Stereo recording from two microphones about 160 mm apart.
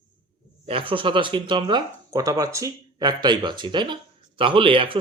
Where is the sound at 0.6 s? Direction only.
35° right (ahead or behind).